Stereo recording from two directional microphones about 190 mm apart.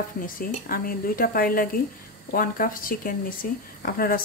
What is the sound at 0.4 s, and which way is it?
Speech, 50° left (ahead or behind).